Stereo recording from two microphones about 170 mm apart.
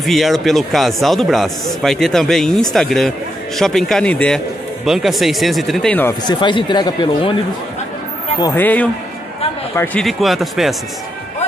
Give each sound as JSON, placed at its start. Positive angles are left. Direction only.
{"t": 0.0, "sound": "a man's voice", "side_deg": 0}
{"t": 6.2, "sound": "speech", "side_deg": 25}
{"t": 8.5, "sound": "a man's voice", "side_deg": 10}